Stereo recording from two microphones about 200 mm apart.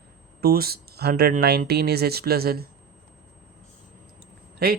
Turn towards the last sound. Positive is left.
turn(degrees=-50)  # may be behind; listen again after turning